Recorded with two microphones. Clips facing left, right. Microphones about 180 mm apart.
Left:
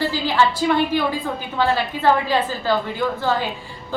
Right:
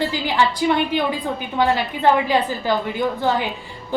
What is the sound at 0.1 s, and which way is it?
A woman's voice, 15° right (ahead or behind).